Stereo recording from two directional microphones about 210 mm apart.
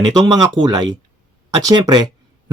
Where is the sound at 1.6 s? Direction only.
20° right (ahead or behind).